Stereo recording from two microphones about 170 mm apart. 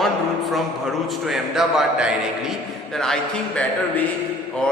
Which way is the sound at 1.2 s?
Centre (ahead or behind).